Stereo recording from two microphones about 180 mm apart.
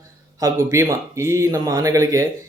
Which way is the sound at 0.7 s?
15° right (ahead or behind).